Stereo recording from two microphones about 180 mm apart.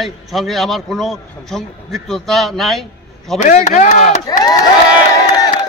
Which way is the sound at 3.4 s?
40° left (ahead or behind).